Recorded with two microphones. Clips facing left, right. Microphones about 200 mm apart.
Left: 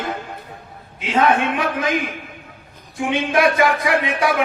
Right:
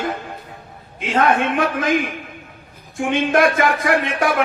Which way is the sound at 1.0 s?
50° right (ahead or behind).